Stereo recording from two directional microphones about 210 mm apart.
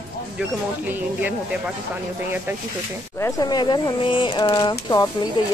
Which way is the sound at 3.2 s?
15° left (ahead or behind).